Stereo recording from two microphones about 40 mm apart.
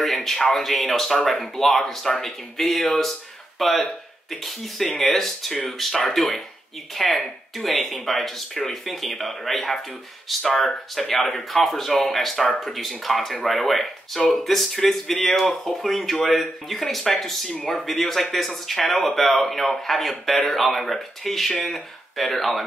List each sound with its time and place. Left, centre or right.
0.0 s speech: centre
10.7 s speech: centre
11.1 s speech: centre